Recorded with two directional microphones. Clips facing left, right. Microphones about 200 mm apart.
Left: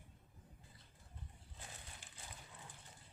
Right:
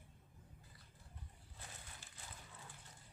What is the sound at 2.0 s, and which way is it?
Horse, 15° left (ahead or behind).